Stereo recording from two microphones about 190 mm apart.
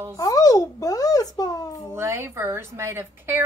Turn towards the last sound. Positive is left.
turn(degrees=-10)  # may be behind; listen again after turning